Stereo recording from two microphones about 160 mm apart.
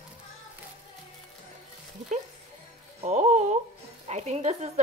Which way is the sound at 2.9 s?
45° right (ahead or behind).